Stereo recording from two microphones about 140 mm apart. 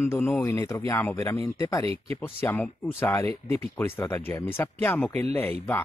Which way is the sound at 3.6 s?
15° left (ahead or behind).